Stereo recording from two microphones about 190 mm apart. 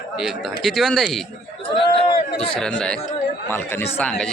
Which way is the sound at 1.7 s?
25° left (ahead or behind).